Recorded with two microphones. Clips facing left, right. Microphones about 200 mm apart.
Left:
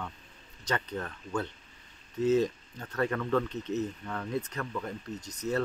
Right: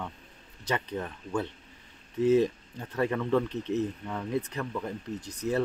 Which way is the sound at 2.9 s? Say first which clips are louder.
Right 2 dB; 15° right (ahead or behind).